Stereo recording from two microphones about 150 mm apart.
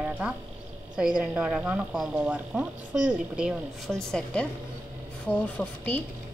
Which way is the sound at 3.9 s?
5° left (ahead or behind).